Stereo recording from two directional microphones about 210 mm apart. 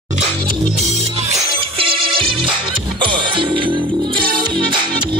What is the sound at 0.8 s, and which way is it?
Music, 30° right (ahead or behind).